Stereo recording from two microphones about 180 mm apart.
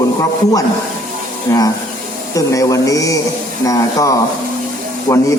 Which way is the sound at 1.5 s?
15° left (ahead or behind).